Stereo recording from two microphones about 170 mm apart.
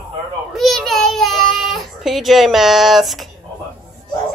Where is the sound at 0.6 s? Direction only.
Centre (ahead or behind).